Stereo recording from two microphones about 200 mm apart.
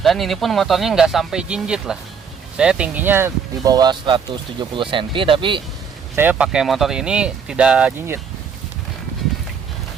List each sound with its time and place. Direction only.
0.0 s speech: centre (ahead or behind); by 5.6 s 25° right (ahead or behind)
6.1 s speech: 10° right (ahead or behind)